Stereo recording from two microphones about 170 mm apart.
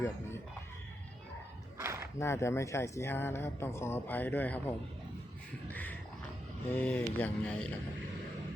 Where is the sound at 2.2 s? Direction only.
15° left (ahead or behind).